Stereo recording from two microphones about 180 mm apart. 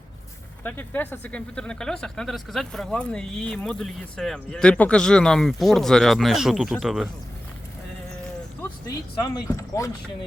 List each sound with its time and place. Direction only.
0.6 s speech: 10° left (ahead or behind)
9.5 s speech: 20° left (ahead or behind)